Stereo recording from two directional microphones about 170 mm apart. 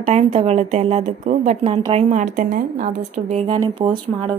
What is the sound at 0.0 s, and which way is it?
A woman's voice, 40° right (ahead or behind).